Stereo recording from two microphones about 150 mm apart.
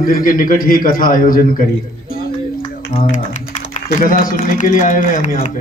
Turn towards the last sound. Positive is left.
turn(degrees=55)  # may be behind; listen again after turning